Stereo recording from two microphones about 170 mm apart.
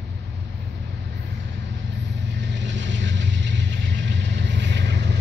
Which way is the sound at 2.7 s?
90° right.